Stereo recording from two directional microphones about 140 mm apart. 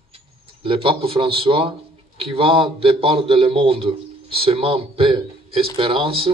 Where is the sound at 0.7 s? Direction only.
40° right (ahead or behind).